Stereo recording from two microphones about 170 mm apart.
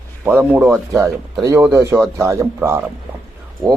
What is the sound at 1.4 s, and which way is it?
Speech, 15° right (ahead or behind).